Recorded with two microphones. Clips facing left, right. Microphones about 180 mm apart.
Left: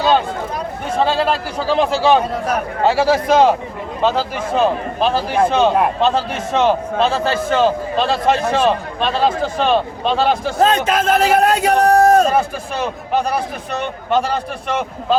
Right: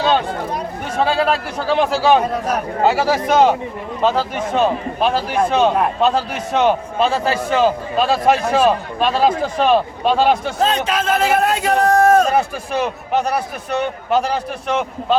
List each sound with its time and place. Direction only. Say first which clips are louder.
0.9 s a man's voice: even; 5° right (ahead or behind)
10.6 s a man's voice: left 3 dB; 50° left (ahead or behind)